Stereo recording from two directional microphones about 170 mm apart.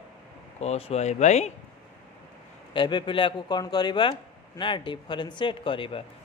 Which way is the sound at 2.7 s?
30° left (ahead or behind).